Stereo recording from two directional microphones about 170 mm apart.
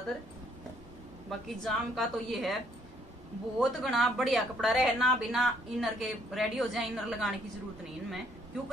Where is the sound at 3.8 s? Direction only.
Centre (ahead or behind).